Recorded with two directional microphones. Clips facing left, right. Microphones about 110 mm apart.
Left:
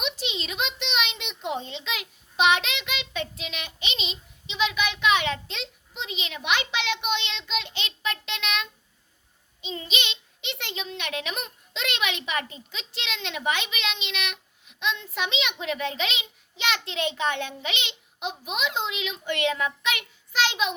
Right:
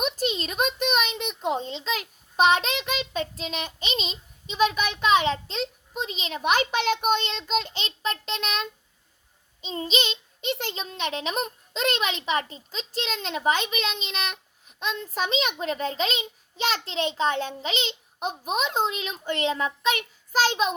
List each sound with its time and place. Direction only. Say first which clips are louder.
0.0 s a child's voice: right 5 dB; 45° right (ahead or behind)